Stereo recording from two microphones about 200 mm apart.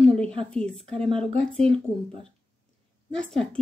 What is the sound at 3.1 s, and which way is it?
Speech, 5° left (ahead or behind).